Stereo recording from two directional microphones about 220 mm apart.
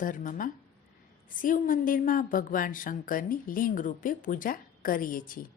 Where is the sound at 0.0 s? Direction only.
35° left (ahead or behind).